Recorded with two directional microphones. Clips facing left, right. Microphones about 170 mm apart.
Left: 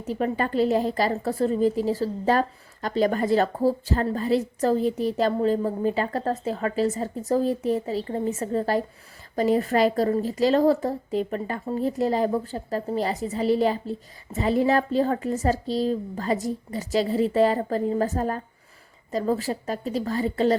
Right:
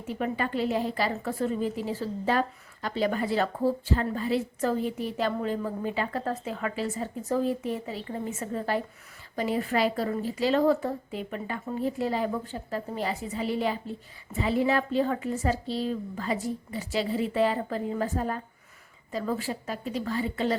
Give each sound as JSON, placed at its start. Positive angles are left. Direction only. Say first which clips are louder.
{"t": 0.0, "sound": "a woman's voice", "louder": "left 4 dB", "side_deg": 40}